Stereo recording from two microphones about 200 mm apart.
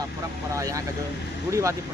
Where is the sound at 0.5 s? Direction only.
15° right (ahead or behind).